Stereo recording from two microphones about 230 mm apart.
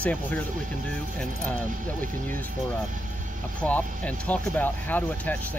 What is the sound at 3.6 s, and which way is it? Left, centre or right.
Speech, centre.